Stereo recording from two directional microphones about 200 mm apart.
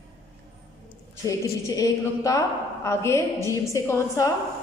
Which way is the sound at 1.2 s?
15° left (ahead or behind).